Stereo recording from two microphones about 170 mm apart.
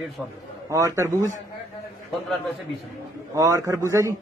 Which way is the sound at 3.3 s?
15° right (ahead or behind).